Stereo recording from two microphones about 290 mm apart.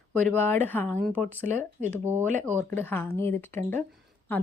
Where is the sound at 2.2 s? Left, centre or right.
Right.